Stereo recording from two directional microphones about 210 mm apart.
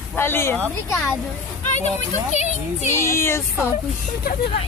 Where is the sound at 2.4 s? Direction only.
35° left (ahead or behind).